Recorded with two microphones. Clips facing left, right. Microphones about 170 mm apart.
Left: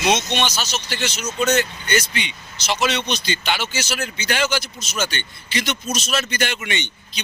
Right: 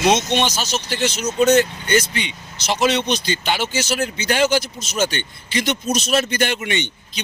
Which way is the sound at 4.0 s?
35° right (ahead or behind).